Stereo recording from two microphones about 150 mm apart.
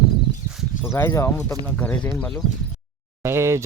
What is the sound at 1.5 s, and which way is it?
Speech, 10° left (ahead or behind).